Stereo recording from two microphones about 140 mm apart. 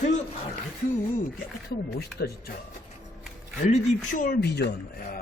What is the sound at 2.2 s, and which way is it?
Speech, 90° left.